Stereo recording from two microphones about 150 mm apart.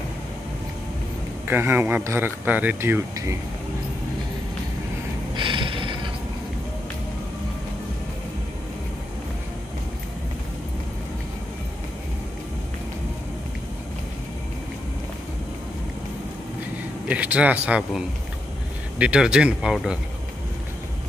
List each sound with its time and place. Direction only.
1.5 s speech: 15° right (ahead or behind)
5.3 s mechanisms: 35° right (ahead or behind)
17.1 s speech: 10° right (ahead or behind)